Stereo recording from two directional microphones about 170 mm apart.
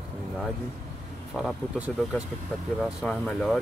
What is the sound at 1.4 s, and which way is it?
Speech, 5° right (ahead or behind).